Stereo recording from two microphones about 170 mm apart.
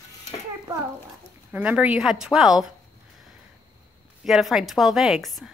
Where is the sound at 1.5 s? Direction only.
10° right (ahead or behind).